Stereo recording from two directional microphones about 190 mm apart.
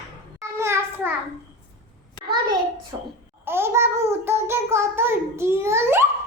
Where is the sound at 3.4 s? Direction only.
10° right (ahead or behind).